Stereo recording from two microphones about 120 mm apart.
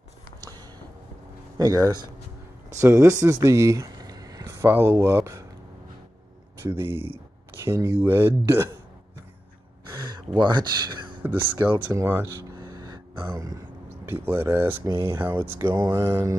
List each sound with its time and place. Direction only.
1.6 s speech: 30° right (ahead or behind)
2.8 s speech: 20° right (ahead or behind)
6.6 s speech: 20° right (ahead or behind)
10.3 s speech: 40° right (ahead or behind)
11.6 s speech: 20° right (ahead or behind)
12.7 s a sound: 35° right (ahead or behind)
14.0 s speech: 15° right (ahead or behind)